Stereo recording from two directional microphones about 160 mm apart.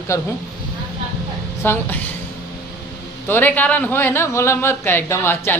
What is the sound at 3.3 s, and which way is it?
A man's voice, 10° left (ahead or behind).